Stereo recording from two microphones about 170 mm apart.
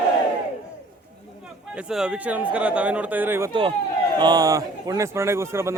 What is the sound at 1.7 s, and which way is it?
A man's voice, 5° right (ahead or behind).